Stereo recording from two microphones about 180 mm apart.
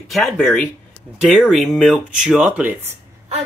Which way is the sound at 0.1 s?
Centre (ahead or behind).